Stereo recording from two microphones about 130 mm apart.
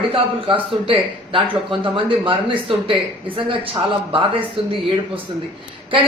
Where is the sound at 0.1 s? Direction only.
40° right (ahead or behind).